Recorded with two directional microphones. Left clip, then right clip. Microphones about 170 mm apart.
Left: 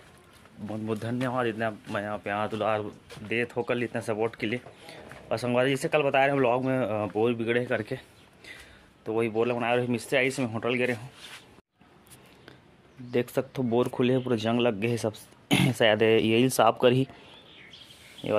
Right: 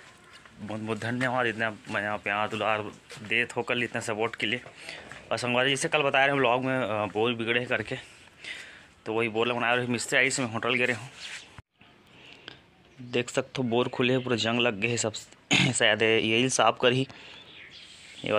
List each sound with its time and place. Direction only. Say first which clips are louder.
0.7 s speech: even; centre (ahead or behind)
13.1 s speech: left 1 dB; 5° left (ahead or behind); by 17.1 s 30° left (ahead or behind)
18.2 s speech: even; centre (ahead or behind)